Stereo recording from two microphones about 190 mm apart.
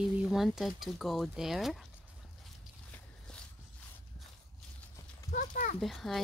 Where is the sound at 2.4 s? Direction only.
5° left (ahead or behind).